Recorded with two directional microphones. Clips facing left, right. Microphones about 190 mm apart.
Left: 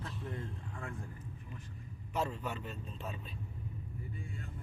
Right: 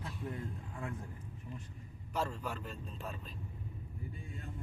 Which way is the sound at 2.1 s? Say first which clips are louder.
Left 1 dB; 5° left (ahead or behind).